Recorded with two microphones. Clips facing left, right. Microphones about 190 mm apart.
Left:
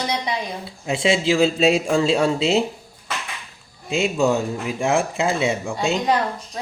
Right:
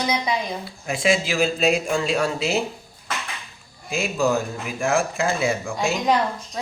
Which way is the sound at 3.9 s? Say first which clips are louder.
Left 3 dB; 25° left (ahead or behind).